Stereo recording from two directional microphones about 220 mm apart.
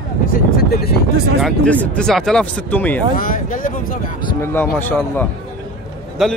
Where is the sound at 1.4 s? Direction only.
5° left (ahead or behind).